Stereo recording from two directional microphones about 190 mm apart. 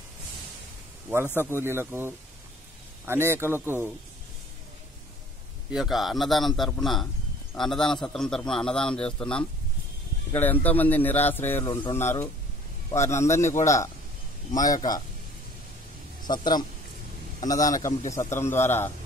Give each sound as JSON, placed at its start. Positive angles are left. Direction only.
{"t": 1.3, "sound": "speech", "side_deg": -10}
{"t": 5.7, "sound": "a man's voice", "side_deg": 0}
{"t": 11.7, "sound": "a man's voice", "side_deg": 25}
{"t": 12.0, "sound": "a man's voice", "side_deg": 15}
{"t": 16.2, "sound": "a man's voice", "side_deg": 20}